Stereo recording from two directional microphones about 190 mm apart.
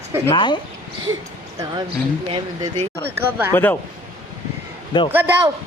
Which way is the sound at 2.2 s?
30° right (ahead or behind).